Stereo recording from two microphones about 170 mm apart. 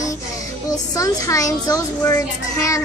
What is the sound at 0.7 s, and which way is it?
A child's voice, 20° left (ahead or behind).